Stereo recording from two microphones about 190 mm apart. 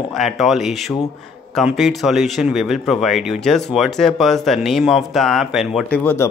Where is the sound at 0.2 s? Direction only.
Centre (ahead or behind).